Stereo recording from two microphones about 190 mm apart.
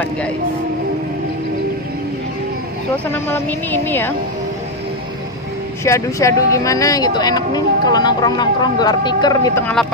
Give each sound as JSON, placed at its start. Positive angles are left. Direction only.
{"t": 3.1, "sound": "a woman's voice", "side_deg": 10}
{"t": 5.9, "sound": "speech", "side_deg": 15}